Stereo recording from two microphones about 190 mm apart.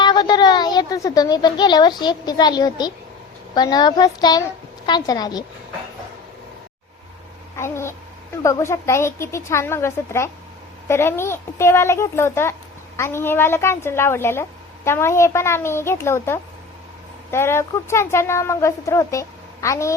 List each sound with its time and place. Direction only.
0.0 s a woman's voice: 25° left (ahead or behind)
7.5 s a woman's voice: 15° left (ahead or behind)